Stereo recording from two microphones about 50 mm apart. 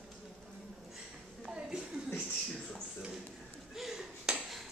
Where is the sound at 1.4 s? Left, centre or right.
Centre.